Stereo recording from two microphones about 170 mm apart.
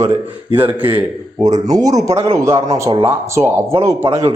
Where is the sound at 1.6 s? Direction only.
20° right (ahead or behind).